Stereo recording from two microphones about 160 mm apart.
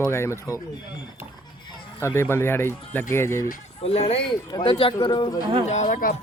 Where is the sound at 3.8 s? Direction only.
40° left (ahead or behind).